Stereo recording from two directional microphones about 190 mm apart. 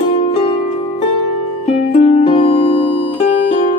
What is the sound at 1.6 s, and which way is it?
Music, 35° left (ahead or behind).